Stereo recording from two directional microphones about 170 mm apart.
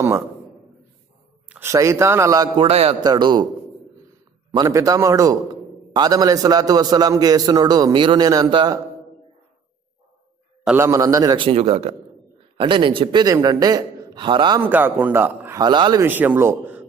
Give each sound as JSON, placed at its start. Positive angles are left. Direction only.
{"t": 1.5, "sound": "a man's voice", "side_deg": -15}
{"t": 4.6, "sound": "a man's voice", "side_deg": -20}
{"t": 10.8, "sound": "a man's voice", "side_deg": -20}
{"t": 14.6, "sound": "a man's voice", "side_deg": -10}
{"t": 15.6, "sound": "a man's voice", "side_deg": -25}
{"t": 16.0, "sound": "a man's voice", "side_deg": -10}